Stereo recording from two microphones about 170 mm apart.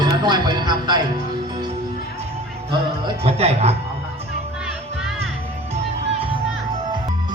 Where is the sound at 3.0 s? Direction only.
35° right (ahead or behind).